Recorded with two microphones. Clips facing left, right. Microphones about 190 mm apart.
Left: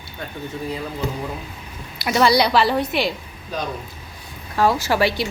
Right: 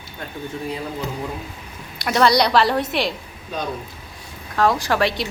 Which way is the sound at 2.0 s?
5° left (ahead or behind).